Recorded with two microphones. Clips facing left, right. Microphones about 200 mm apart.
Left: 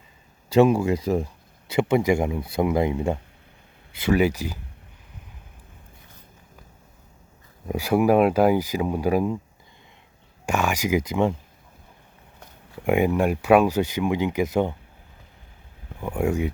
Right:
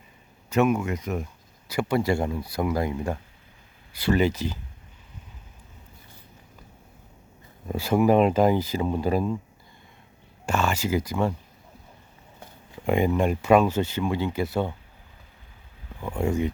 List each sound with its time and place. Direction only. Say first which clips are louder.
0.5 s speech: left 5 dB; 30° left (ahead or behind)
4.0 s speech: left 2 dB; 10° left (ahead or behind)
7.7 s speech: left 1 dB; 15° left (ahead or behind)
10.4 s speech: left 1 dB; 15° left (ahead or behind)
12.8 s speech: left 2 dB; 10° left (ahead or behind)
16.0 s speech: left 2 dB; 15° left (ahead or behind)